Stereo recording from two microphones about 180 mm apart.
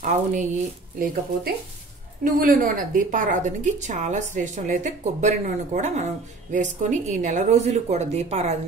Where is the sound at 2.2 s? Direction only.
50° right (ahead or behind).